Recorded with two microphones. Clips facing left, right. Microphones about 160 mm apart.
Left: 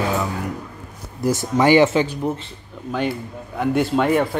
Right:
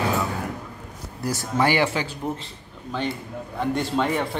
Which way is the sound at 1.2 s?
20° left (ahead or behind).